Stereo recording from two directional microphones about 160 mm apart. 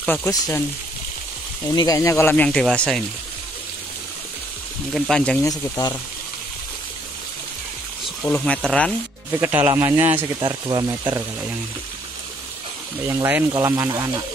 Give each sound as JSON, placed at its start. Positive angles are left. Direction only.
{"t": 0.0, "sound": "speech", "side_deg": 15}
{"t": 1.7, "sound": "speech", "side_deg": 25}
{"t": 4.9, "sound": "speech", "side_deg": 0}
{"t": 5.4, "sound": "speech", "side_deg": 25}
{"t": 8.3, "sound": "speech", "side_deg": 5}
{"t": 9.4, "sound": "speech", "side_deg": -15}
{"t": 10.4, "sound": "speech", "side_deg": -30}
{"t": 10.9, "sound": "speech", "side_deg": -15}
{"t": 13.0, "sound": "speech", "side_deg": -15}